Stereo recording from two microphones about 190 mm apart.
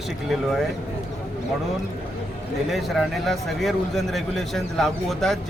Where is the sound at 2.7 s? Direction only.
Centre (ahead or behind).